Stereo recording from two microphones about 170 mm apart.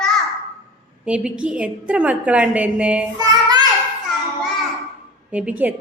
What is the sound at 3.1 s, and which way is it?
Child singing, 25° right (ahead or behind).